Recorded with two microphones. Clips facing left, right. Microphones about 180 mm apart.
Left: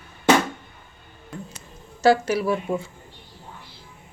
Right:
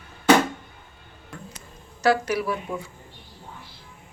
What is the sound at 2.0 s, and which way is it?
Speech, 25° left (ahead or behind).